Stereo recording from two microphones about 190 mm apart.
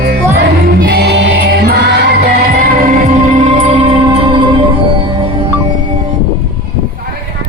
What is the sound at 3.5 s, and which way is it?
Music, 25° right (ahead or behind).